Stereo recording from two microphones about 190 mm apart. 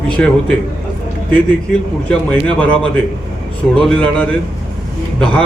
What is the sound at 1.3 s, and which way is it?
A man's voice, 10° left (ahead or behind).